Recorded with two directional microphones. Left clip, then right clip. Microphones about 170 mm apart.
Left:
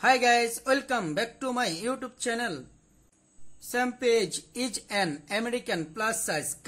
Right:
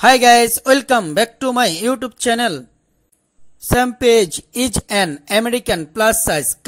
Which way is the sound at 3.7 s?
50° right (ahead or behind).